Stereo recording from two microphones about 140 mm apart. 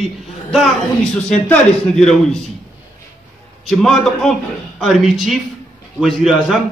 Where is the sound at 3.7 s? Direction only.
Centre (ahead or behind).